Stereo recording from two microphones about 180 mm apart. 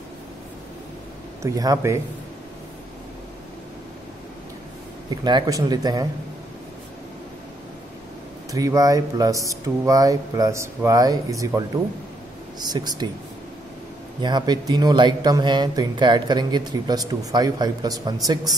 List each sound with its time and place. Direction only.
1.4 s speech: 20° right (ahead or behind)
5.1 s speech: 25° right (ahead or behind)
8.5 s speech: 20° right (ahead or behind)
14.2 s speech: 25° right (ahead or behind)